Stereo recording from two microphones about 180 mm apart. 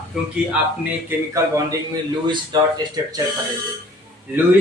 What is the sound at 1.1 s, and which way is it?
Speech, 15° right (ahead or behind).